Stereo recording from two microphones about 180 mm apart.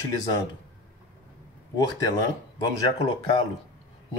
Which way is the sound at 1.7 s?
25° left (ahead or behind).